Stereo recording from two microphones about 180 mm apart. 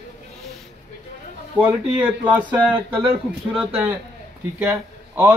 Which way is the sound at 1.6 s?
10° right (ahead or behind).